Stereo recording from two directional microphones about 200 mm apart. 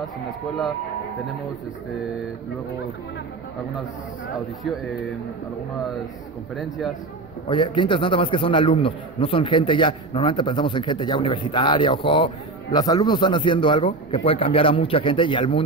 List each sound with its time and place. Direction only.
7.4 s a man's voice: 25° left (ahead or behind)